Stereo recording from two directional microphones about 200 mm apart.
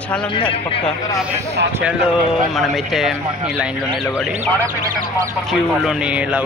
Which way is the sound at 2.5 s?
Centre (ahead or behind).